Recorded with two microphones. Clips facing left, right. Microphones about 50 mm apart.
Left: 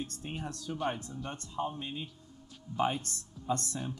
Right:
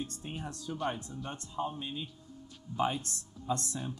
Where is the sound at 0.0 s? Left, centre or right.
Left.